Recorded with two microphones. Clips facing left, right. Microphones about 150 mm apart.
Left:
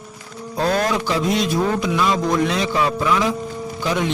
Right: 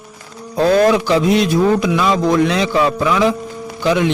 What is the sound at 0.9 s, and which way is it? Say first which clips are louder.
Speech: right 7 dB; 80° right.